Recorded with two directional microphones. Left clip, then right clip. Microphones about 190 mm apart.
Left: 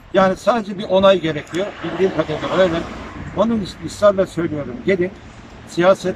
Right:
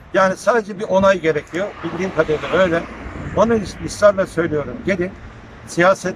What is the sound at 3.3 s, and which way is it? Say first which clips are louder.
Speech: right 3 dB; centre (ahead or behind).